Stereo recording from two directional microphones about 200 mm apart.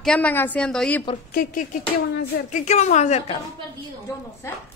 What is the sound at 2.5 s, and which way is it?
Speech, 35° left (ahead or behind).